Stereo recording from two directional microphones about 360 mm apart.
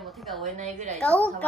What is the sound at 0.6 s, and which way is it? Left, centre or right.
Speech, centre.